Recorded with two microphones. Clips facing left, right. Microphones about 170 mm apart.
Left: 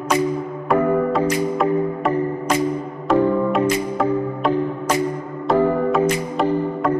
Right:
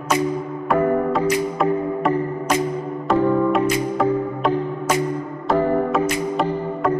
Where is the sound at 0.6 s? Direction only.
Centre (ahead or behind).